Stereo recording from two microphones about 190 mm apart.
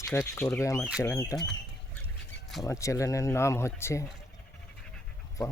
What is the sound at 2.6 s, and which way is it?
Speech, 15° left (ahead or behind).